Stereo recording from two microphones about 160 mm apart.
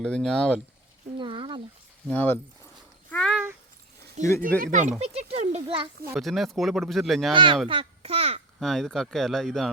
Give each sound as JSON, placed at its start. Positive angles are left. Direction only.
{"t": 0.0, "sound": "speech", "side_deg": 5}
{"t": 1.2, "sound": "a sound", "side_deg": -30}
{"t": 2.0, "sound": "speech", "side_deg": 10}
{"t": 3.1, "sound": "a sound", "side_deg": 5}
{"t": 4.2, "sound": "a child's voice", "side_deg": -45}
{"t": 6.1, "sound": "speech", "side_deg": 0}
{"t": 7.3, "sound": "a child's voice", "side_deg": -30}
{"t": 8.5, "sound": "speech", "side_deg": 0}